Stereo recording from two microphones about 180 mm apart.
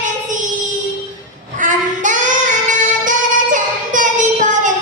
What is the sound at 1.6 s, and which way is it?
Child singing, 45° right (ahead or behind).